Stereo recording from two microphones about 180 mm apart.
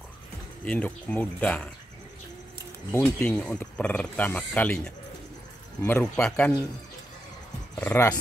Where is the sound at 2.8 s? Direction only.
10° left (ahead or behind).